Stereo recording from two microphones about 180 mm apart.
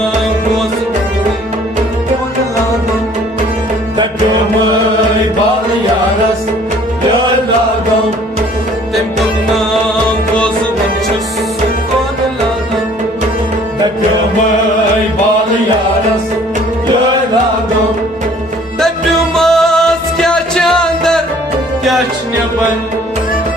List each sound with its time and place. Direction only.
19.3 s music: centre (ahead or behind)